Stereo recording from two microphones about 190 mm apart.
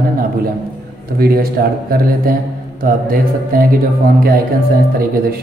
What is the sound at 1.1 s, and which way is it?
Speech, 55° right (ahead or behind).